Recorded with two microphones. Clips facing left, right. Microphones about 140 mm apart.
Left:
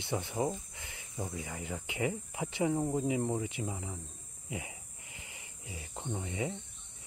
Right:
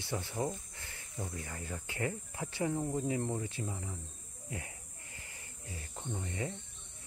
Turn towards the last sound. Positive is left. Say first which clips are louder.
# left 3 dB
turn(degrees=10)  # may be behind; listen again after turning